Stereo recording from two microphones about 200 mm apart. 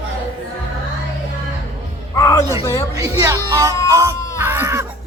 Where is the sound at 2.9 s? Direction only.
15° right (ahead or behind).